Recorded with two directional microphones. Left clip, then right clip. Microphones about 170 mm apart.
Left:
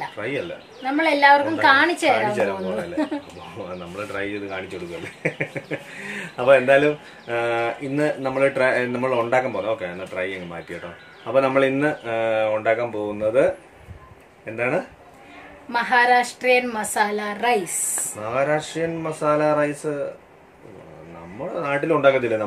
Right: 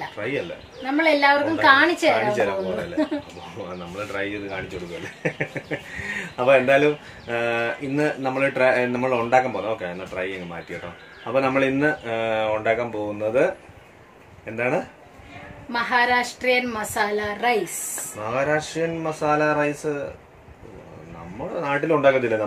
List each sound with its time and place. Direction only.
0.2 s speech: 5° right (ahead or behind)
0.8 s a woman's voice: 20° left (ahead or behind)
2.1 s speech: centre (ahead or behind)
2.7 s a woman's voice: 20° left (ahead or behind)
3.9 s speech: centre (ahead or behind)
15.7 s a woman's voice: 20° left (ahead or behind)
18.3 s speech: 5° right (ahead or behind)
21.5 s speech: centre (ahead or behind)